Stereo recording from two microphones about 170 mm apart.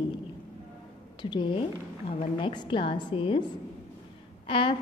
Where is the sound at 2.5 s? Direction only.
30° left (ahead or behind).